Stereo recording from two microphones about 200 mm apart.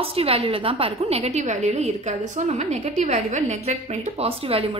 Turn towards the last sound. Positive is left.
turn(degrees=-30)  # may be behind; listen again after turning